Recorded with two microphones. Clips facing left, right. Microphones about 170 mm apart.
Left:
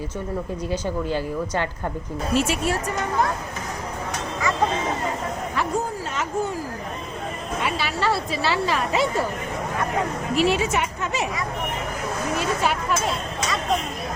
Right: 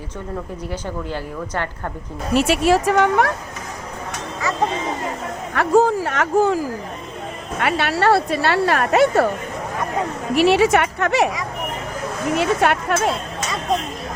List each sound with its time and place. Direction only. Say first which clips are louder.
0.7 s speech: left 3 dB; 15° left (ahead or behind)
2.3 s a woman's voice: right 7 dB; 70° right (ahead or behind)
5.5 s speech: right 12 dB; 75° right (ahead or behind)
7.6 s speech: right 7 dB; 65° right (ahead or behind)
10.3 s a woman's voice: right 7 dB; 70° right (ahead or behind)
12.4 s speech: right 7 dB; 60° right (ahead or behind)